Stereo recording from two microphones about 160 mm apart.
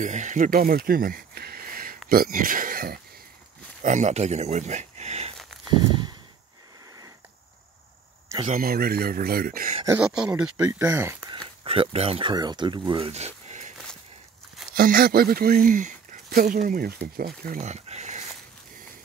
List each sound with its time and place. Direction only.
0.0 s speech: 50° right (ahead or behind)
3.8 s speech: 45° right (ahead or behind)
5.7 s a sound: 30° right (ahead or behind)
8.5 s speech: 65° right (ahead or behind)
9.8 s speech: 5° right (ahead or behind)
11.2 s speech: 30° right (ahead or behind)
14.8 s speech: 65° right (ahead or behind)
17.6 s speech: 45° right (ahead or behind)